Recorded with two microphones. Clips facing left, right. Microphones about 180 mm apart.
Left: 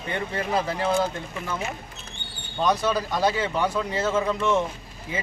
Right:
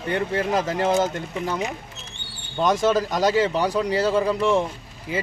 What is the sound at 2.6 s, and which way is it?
Speech, 45° right (ahead or behind).